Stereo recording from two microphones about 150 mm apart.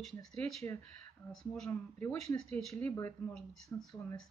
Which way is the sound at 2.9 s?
20° left (ahead or behind).